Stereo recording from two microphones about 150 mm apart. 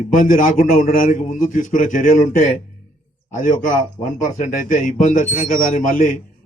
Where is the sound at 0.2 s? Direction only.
65° left (ahead or behind).